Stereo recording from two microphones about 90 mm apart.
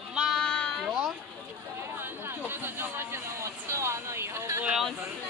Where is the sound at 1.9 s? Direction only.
25° right (ahead or behind).